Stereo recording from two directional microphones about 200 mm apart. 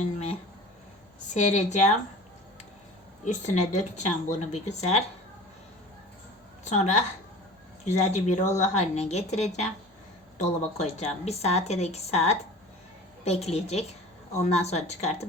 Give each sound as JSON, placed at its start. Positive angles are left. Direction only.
{"t": 1.3, "sound": "a woman's voice", "side_deg": 35}
{"t": 3.2, "sound": "a woman's voice", "side_deg": 35}
{"t": 6.7, "sound": "a woman's voice", "side_deg": 35}